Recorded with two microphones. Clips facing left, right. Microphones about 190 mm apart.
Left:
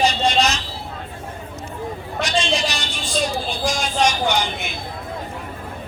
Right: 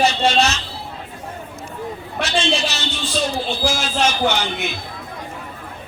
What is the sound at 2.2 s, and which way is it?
Speech, 15° left (ahead or behind).